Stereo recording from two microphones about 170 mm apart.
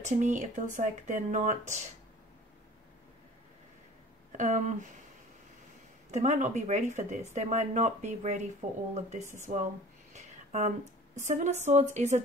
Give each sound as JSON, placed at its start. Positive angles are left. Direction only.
{"t": 0.0, "sound": "speech", "side_deg": -45}
{"t": 4.4, "sound": "speech", "side_deg": -45}
{"t": 6.1, "sound": "speech", "side_deg": -45}
{"t": 10.1, "sound": "a sound", "side_deg": -45}
{"t": 11.2, "sound": "speech", "side_deg": -45}